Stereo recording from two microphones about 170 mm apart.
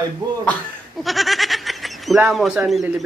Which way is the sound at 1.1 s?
Centre (ahead or behind).